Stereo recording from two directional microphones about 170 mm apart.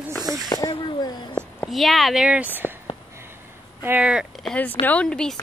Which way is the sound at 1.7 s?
Centre (ahead or behind).